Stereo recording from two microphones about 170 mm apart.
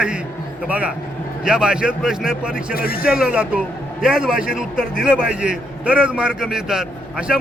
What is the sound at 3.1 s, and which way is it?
A man's voice, 5° right (ahead or behind).